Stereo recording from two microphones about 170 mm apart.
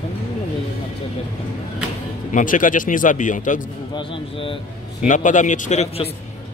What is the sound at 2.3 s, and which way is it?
A man's voice, 50° left (ahead or behind).